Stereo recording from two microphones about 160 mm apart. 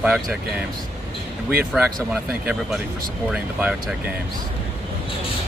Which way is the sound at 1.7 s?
5° right (ahead or behind).